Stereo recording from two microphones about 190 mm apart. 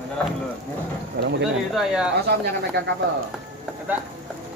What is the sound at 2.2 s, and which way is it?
Speech, 60° right (ahead or behind).